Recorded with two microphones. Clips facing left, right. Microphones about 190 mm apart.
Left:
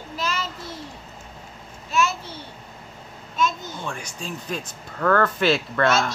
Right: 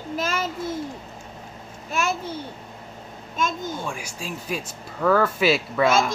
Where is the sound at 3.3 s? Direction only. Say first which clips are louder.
Left 2 dB; 50° right (ahead or behind).